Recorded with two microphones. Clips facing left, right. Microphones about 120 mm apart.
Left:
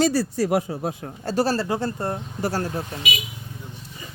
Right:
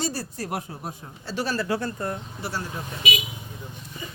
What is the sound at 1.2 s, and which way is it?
Speech, 40° left (ahead or behind).